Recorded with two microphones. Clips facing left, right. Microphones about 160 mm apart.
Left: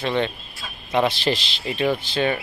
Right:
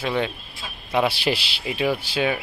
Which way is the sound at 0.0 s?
10° right (ahead or behind).